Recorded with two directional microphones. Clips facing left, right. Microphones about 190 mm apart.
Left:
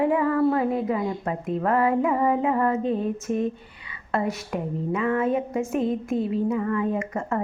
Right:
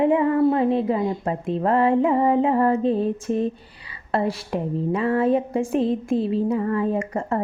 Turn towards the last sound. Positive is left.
turn(degrees=-35)  # may be behind; listen again after turning